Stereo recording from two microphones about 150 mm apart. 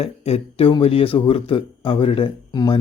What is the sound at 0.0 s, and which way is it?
Speech, 40° left (ahead or behind).